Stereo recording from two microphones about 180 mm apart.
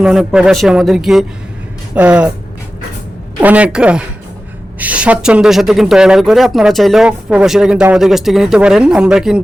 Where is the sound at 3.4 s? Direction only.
10° right (ahead or behind).